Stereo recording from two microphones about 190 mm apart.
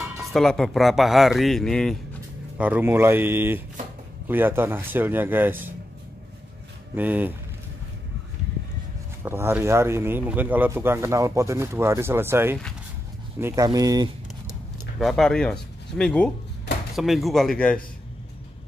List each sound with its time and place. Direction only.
0.0 s speech: centre (ahead or behind)
2.5 s speech: 10° right (ahead or behind)
7.0 s speech: 10° right (ahead or behind)
9.2 s speech: 10° right (ahead or behind)
15.0 s speech: centre (ahead or behind)